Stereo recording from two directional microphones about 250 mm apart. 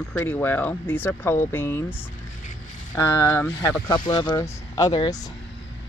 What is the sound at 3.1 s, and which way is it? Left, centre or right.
Speech, centre.